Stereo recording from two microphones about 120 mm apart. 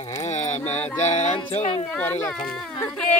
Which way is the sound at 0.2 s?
75° left (ahead or behind).